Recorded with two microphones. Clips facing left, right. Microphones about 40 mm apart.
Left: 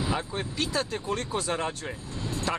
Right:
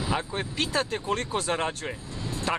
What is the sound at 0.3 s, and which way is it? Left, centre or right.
Speech, right.